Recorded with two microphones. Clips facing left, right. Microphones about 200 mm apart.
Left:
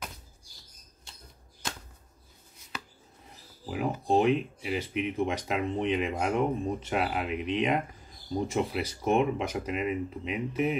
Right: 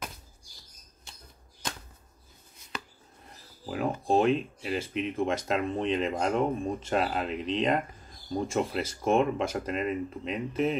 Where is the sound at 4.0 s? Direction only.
20° left (ahead or behind).